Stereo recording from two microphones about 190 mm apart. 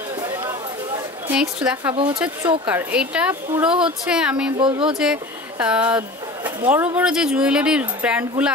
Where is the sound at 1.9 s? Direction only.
25° right (ahead or behind).